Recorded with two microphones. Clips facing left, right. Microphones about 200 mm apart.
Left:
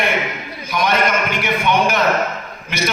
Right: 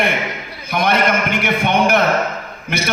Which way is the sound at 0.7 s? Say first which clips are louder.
Right 1 dB; 55° right (ahead or behind).